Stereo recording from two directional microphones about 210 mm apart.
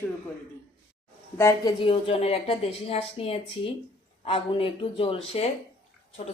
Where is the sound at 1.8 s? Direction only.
25° left (ahead or behind).